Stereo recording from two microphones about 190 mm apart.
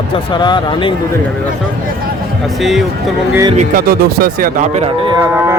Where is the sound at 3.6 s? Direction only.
50° right (ahead or behind).